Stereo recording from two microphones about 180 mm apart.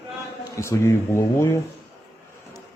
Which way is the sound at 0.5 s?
15° left (ahead or behind).